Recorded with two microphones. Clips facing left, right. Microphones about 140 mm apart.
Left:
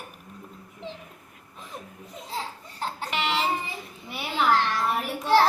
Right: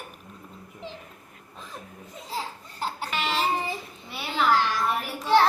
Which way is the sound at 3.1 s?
20° left (ahead or behind).